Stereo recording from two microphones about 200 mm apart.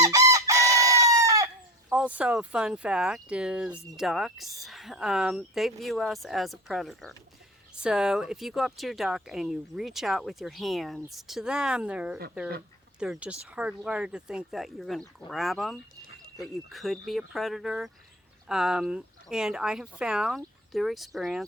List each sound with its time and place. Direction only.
0.0 s chicken: 15° right (ahead or behind)
1.9 s speech: 5° right (ahead or behind)